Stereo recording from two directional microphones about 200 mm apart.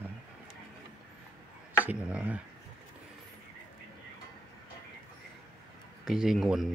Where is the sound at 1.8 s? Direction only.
5° right (ahead or behind).